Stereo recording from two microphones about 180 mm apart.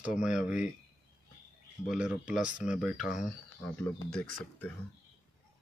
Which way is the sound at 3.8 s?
5° left (ahead or behind).